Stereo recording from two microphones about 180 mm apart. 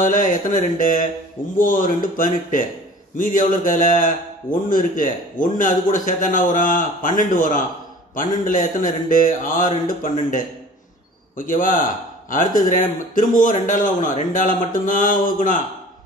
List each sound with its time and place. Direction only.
0.0 s a man's voice: 50° left (ahead or behind)
11.3 s a man's voice: 50° left (ahead or behind)